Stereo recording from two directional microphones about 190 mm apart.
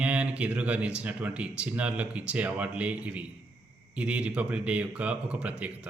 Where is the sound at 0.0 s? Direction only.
5° right (ahead or behind).